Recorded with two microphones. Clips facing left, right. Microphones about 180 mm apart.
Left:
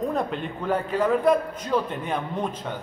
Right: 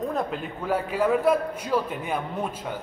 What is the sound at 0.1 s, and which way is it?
A man's voice, centre (ahead or behind).